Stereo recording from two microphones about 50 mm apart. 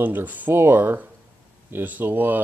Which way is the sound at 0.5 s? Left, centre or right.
Right.